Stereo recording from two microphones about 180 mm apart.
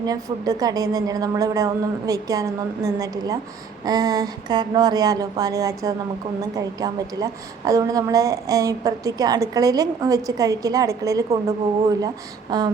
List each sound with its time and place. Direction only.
0.0 s a woman's voice: 20° right (ahead or behind)